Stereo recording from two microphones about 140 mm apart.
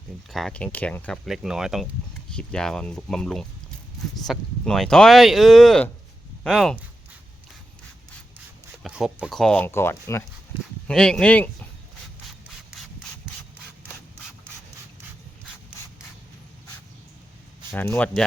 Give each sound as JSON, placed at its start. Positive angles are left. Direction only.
{"t": 0.3, "sound": "speech", "side_deg": 0}
{"t": 8.8, "sound": "speech", "side_deg": 0}
{"t": 9.6, "sound": "speech", "side_deg": 15}
{"t": 10.8, "sound": "speech", "side_deg": 5}
{"t": 17.7, "sound": "speech", "side_deg": 15}